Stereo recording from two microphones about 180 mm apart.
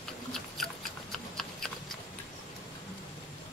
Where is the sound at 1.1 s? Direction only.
Centre (ahead or behind).